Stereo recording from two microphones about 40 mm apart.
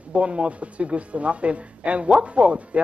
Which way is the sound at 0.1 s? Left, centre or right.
Right.